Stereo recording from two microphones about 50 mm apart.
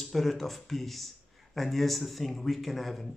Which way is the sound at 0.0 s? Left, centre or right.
Centre.